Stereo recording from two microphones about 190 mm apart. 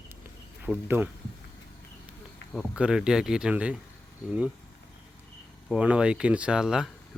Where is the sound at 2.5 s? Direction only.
5° right (ahead or behind).